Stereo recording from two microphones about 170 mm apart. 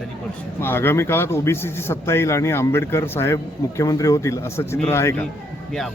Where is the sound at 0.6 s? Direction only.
15° left (ahead or behind).